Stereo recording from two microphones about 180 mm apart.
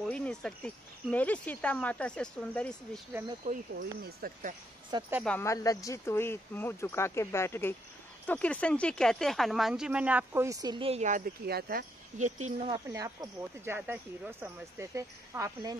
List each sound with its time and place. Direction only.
0.0 s speech: 5° left (ahead or behind)
3.7 s speech: 55° right (ahead or behind)
5.2 s speech: 10° left (ahead or behind); by 11.2 s 40° right (ahead or behind)
11.4 s speech: 60° right (ahead or behind)
12.2 s speech: 40° right (ahead or behind)
12.6 s speech: 20° right (ahead or behind)